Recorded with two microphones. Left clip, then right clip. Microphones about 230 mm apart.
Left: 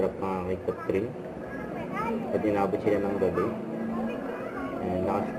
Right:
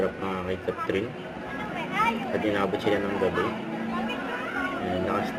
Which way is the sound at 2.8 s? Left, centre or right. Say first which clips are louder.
Right 1 dB; right.